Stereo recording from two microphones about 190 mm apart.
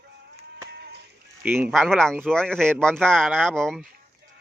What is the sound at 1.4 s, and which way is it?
Speech, 10° right (ahead or behind).